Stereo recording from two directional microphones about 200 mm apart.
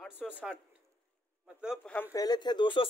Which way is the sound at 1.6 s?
5° right (ahead or behind).